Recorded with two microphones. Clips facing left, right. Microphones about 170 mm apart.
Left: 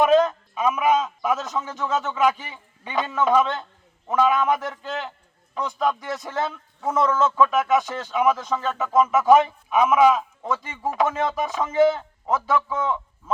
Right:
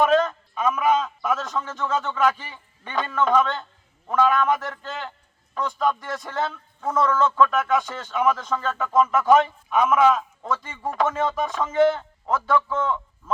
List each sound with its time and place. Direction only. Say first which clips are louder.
0.0 s a man's voice: left 2 dB; 15° left (ahead or behind)